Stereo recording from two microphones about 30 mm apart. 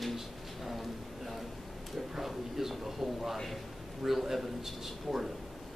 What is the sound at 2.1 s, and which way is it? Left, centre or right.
Speech, centre.